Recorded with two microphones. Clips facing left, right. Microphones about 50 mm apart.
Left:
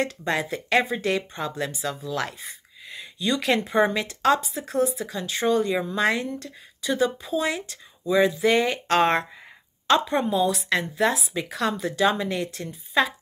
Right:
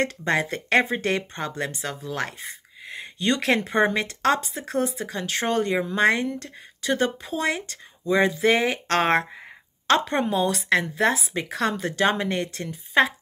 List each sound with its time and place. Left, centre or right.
0.0 s speech: right
2.9 s speech: right